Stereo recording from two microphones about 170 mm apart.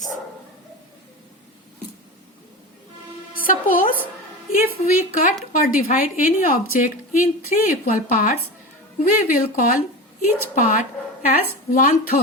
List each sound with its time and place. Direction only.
3.4 s music: 55° left (ahead or behind)
4.5 s a woman's voice: 55° left (ahead or behind)